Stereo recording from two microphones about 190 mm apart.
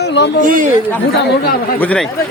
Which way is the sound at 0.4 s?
45° right (ahead or behind).